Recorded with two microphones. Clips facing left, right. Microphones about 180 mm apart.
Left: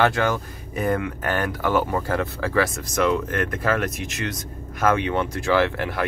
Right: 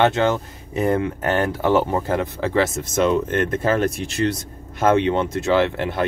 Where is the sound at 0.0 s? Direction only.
20° right (ahead or behind).